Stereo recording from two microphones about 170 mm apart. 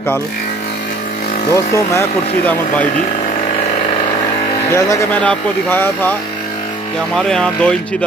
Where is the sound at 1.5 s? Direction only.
20° left (ahead or behind).